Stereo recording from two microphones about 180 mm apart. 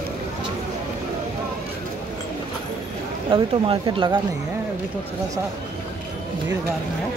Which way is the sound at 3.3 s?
25° right (ahead or behind).